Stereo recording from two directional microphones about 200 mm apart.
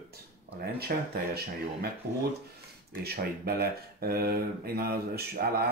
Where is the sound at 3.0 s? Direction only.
50° right (ahead or behind).